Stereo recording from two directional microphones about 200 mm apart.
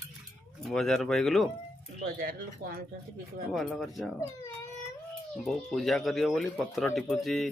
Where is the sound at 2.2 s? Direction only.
45° right (ahead or behind).